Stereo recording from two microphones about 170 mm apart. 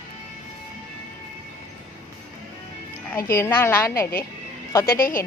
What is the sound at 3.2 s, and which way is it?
Speech, 15° left (ahead or behind).